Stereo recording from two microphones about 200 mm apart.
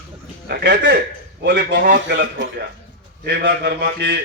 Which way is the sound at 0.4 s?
55° right (ahead or behind).